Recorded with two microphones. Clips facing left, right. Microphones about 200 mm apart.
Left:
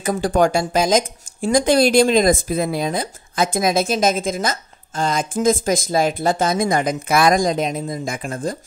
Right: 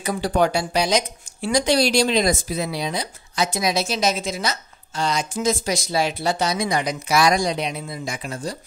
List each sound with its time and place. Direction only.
0.0 s speech: 45° left (ahead or behind)